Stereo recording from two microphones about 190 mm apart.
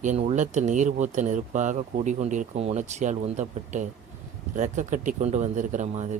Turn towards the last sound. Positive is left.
turn(degrees=-40)  # may be behind; listen again after turning